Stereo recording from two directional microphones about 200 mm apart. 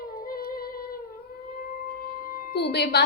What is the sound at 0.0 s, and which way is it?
Humming, 45° left (ahead or behind).